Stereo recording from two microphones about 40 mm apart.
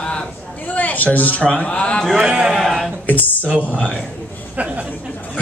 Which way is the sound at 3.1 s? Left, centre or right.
Left.